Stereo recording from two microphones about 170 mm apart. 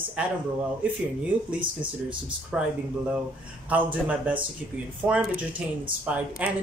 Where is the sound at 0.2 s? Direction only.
5° right (ahead or behind).